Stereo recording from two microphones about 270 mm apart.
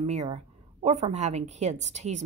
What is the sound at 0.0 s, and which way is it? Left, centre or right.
Speech, right.